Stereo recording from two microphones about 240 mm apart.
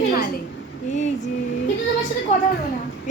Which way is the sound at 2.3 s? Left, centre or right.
Left.